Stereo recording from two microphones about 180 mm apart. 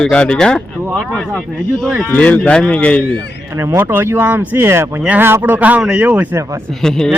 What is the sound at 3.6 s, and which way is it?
Speech, 10° right (ahead or behind).